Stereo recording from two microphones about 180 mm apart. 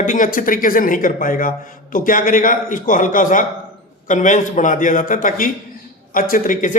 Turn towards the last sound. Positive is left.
turn(degrees=50)  # may be behind; listen again after turning